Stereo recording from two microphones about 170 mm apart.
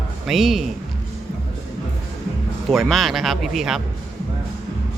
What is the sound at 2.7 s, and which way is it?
Speech, centre (ahead or behind).